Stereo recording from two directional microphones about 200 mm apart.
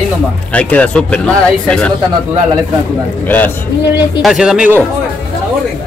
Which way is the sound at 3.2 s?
10° left (ahead or behind).